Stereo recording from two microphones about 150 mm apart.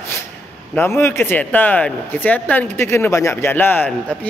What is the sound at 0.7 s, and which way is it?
Speech, 15° left (ahead or behind).